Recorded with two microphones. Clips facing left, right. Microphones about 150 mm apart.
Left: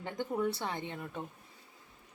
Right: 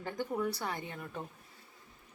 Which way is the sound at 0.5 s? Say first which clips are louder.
Left 1 dB; 25° left (ahead or behind).